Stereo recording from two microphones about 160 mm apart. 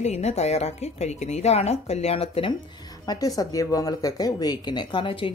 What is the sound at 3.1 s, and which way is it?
Speech, 20° left (ahead or behind).